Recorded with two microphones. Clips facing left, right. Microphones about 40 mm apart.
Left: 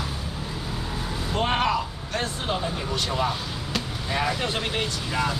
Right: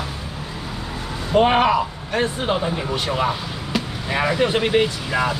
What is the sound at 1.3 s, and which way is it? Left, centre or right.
Speech, right.